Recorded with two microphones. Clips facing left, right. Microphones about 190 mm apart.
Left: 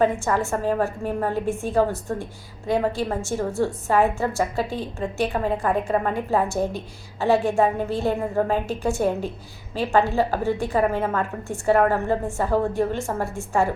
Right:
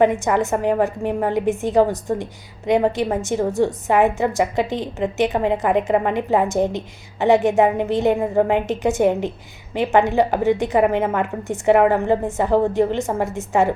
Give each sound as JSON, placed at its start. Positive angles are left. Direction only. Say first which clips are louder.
{"t": 0.0, "sound": "a woman's voice", "louder": "right 4 dB", "side_deg": -20}